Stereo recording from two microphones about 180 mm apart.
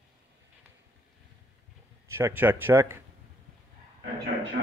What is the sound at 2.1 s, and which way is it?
Speech, 10° right (ahead or behind).